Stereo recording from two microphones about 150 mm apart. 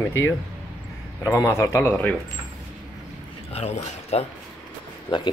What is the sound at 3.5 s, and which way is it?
Speech, 45° left (ahead or behind).